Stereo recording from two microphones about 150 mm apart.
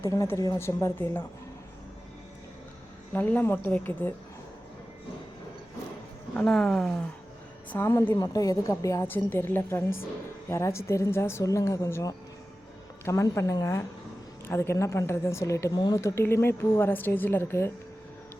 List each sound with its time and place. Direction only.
0.0 s a woman's voice: 20° left (ahead or behind)
3.1 s speech: 10° left (ahead or behind)
6.3 s speech: 5° left (ahead or behind)
7.7 s a woman's voice: 15° left (ahead or behind)